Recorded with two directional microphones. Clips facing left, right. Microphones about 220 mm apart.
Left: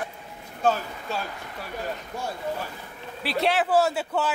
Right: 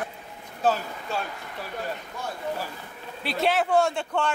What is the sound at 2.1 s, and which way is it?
Speech, 30° left (ahead or behind).